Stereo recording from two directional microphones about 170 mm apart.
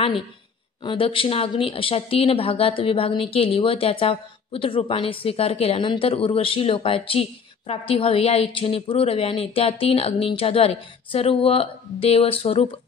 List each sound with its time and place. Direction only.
0.8 s a woman's voice: 30° left (ahead or behind)